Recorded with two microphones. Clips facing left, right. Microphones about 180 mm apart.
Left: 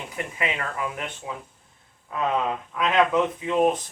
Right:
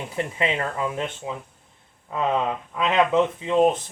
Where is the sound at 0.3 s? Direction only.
25° right (ahead or behind).